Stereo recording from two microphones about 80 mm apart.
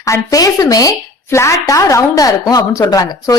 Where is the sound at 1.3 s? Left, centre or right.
Left.